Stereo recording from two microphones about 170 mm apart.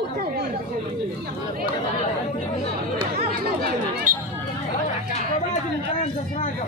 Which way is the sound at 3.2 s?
60° right (ahead or behind).